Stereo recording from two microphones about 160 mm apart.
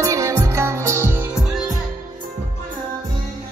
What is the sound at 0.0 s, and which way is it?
Music, 20° right (ahead or behind).